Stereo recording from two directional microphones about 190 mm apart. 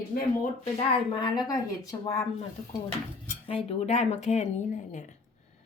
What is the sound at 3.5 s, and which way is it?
Speech, 30° left (ahead or behind).